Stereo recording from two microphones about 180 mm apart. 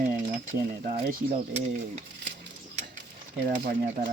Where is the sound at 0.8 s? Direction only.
35° right (ahead or behind).